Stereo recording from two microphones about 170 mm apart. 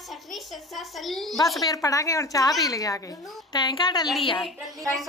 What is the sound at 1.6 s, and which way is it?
A woman's voice, 20° left (ahead or behind).